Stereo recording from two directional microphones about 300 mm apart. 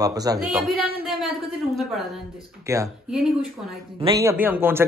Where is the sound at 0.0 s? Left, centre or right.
Centre.